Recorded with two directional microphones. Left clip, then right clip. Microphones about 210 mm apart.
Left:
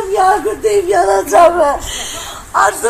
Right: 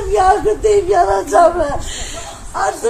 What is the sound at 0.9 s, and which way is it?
Speech, 40° left (ahead or behind).